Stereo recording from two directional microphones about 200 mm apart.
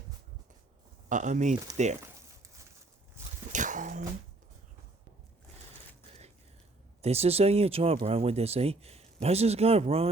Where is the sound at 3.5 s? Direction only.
40° right (ahead or behind).